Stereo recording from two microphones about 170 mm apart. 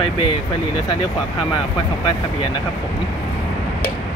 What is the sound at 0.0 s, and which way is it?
Speech, 25° left (ahead or behind).